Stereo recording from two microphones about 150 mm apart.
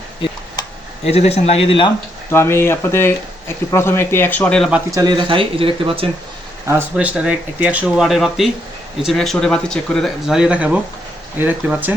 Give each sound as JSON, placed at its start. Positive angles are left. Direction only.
{"t": 1.0, "sound": "speech", "side_deg": 45}
{"t": 2.3, "sound": "speech", "side_deg": 15}
{"t": 4.9, "sound": "speech", "side_deg": -25}
{"t": 6.9, "sound": "speech", "side_deg": -5}